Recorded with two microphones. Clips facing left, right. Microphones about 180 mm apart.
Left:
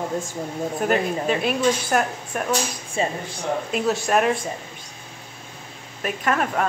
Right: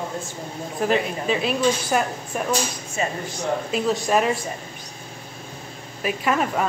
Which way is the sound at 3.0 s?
30° left (ahead or behind).